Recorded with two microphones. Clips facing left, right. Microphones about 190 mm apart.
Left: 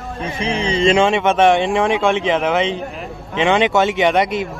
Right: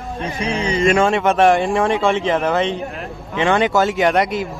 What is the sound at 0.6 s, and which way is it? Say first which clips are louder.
Speech: left 1 dB; 25° left (ahead or behind).